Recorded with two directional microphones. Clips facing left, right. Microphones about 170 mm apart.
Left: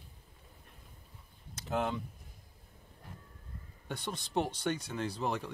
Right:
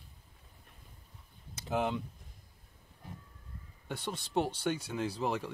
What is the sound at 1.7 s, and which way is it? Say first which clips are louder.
Speech: right 1 dB; centre (ahead or behind).